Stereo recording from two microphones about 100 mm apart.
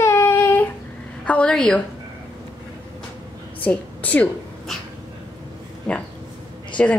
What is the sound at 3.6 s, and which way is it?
Speech, 15° left (ahead or behind).